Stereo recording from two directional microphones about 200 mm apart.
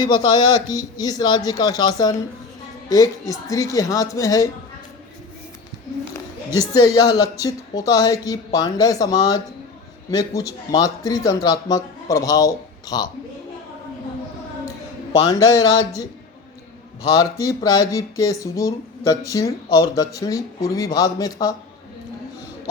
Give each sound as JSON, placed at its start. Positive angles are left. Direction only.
{"t": 0.0, "sound": "speech", "side_deg": 20}
{"t": 6.5, "sound": "speech", "side_deg": 20}
{"t": 15.3, "sound": "speech", "side_deg": 15}
{"t": 17.1, "sound": "speech", "side_deg": 15}